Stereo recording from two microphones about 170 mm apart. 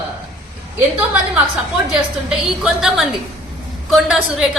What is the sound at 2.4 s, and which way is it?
A woman's voice, centre (ahead or behind).